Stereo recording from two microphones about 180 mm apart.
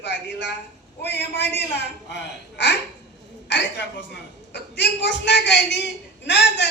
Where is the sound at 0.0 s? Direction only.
80° left.